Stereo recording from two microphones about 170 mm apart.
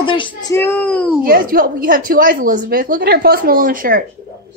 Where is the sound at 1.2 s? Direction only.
55° right (ahead or behind).